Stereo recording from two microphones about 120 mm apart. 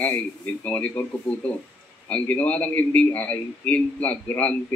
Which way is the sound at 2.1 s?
10° left (ahead or behind).